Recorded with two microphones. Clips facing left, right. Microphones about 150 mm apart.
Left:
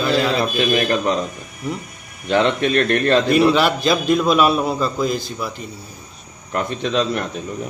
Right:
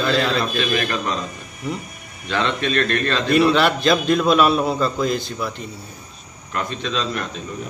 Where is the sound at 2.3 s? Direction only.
20° left (ahead or behind).